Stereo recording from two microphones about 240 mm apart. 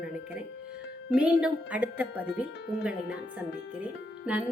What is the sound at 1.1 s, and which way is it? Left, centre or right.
Speech, centre.